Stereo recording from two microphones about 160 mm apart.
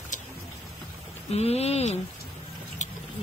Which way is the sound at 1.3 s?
40° left (ahead or behind).